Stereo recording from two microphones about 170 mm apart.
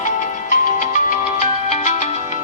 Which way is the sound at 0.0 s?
45° left (ahead or behind).